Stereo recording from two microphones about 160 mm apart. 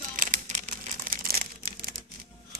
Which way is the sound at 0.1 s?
55° right (ahead or behind).